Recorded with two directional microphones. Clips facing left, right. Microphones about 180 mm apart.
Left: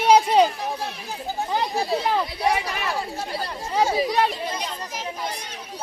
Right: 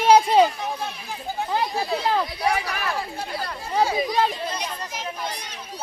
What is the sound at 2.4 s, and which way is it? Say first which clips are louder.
Speech: left 1 dB; 25° left (ahead or behind).